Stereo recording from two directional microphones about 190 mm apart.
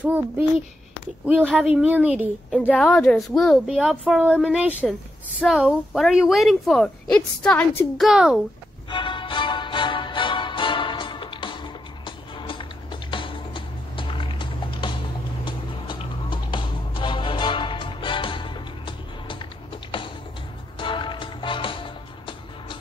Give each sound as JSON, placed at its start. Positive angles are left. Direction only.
{"t": 0.0, "sound": "a woman's voice", "side_deg": -10}
{"t": 2.7, "sound": "a woman's voice", "side_deg": 5}
{"t": 8.9, "sound": "music", "side_deg": 25}
{"t": 20.8, "sound": "music", "side_deg": 25}